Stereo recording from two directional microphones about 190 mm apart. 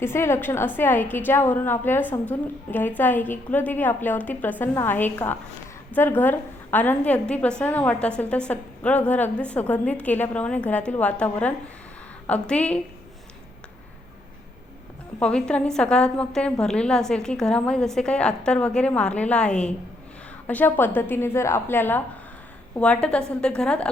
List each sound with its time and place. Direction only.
0.0 s a woman's voice: 15° left (ahead or behind)
15.2 s a woman's voice: 5° left (ahead or behind)